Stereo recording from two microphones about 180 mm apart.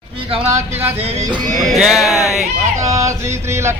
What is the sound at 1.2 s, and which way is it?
Speech, 25° right (ahead or behind).